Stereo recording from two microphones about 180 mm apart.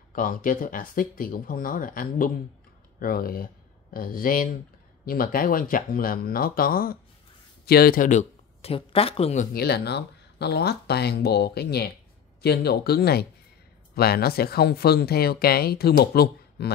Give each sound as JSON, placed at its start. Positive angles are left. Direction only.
{"t": 0.1, "sound": "speech", "side_deg": 50}
{"t": 9.5, "sound": "speech", "side_deg": 65}